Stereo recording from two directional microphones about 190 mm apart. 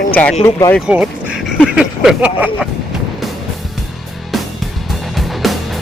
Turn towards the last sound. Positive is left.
turn(degrees=0)  # may be behind; listen again after turning